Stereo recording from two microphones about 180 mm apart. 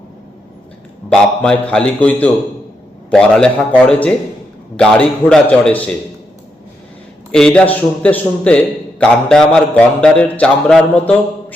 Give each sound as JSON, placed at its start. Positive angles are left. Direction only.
{"t": 1.1, "sound": "a man's voice", "side_deg": 5}
{"t": 7.3, "sound": "a man's voice", "side_deg": 5}